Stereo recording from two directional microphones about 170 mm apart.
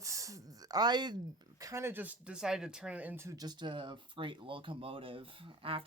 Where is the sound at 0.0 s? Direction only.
20° right (ahead or behind).